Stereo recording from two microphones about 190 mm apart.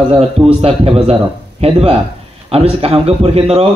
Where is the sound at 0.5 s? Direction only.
30° right (ahead or behind).